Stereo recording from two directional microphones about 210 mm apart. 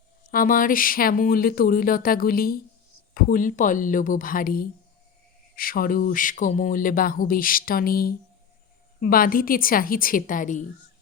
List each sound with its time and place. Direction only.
0.3 s speech: 40° left (ahead or behind)